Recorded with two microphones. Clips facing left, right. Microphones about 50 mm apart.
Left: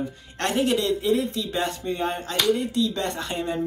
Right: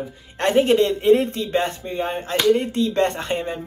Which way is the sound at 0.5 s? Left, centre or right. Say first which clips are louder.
Right 6 dB; right.